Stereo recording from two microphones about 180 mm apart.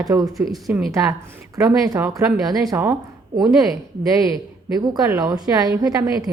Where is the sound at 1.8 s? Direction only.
20° right (ahead or behind).